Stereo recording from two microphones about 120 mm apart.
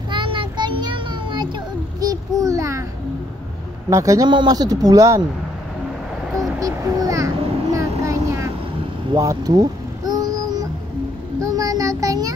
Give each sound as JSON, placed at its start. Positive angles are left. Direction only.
{"t": 0.1, "sound": "child singing", "side_deg": -45}
{"t": 2.0, "sound": "a sound", "side_deg": -30}
{"t": 3.9, "sound": "speech", "side_deg": -25}
{"t": 6.6, "sound": "vehicle", "side_deg": -30}
{"t": 11.4, "sound": "music", "side_deg": -30}